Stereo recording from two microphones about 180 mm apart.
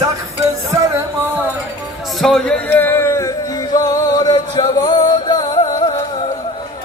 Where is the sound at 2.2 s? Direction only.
5° left (ahead or behind); by 5.9 s 20° left (ahead or behind).